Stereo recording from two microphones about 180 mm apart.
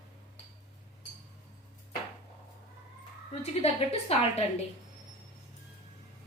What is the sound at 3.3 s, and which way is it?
Speech, 35° left (ahead or behind).